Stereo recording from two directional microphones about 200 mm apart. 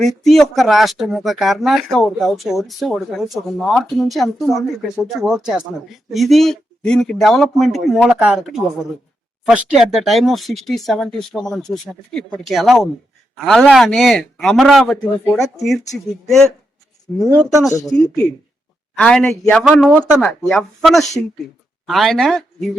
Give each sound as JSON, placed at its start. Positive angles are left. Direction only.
{"t": 0.0, "sound": "speech", "side_deg": 0}
{"t": 16.2, "sound": "speech", "side_deg": 0}
{"t": 17.2, "sound": "speech", "side_deg": -20}
{"t": 17.8, "sound": "speech", "side_deg": 5}